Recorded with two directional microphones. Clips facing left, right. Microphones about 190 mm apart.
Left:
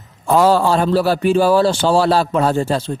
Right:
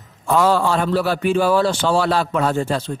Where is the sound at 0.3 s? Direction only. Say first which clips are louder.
Left 3 dB; 35° left (ahead or behind).